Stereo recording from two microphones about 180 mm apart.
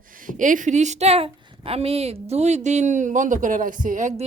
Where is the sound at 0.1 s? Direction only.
50° right (ahead or behind).